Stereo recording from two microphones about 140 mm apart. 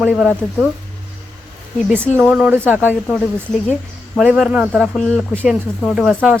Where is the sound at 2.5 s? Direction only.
15° right (ahead or behind).